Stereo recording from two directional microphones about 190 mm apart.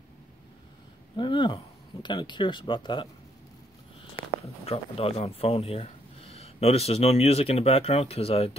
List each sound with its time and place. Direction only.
1.1 s speech: 25° left (ahead or behind)
4.6 s speech: 30° left (ahead or behind)